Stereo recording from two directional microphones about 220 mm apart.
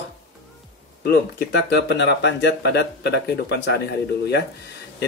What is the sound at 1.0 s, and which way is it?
Speech, 50° left (ahead or behind).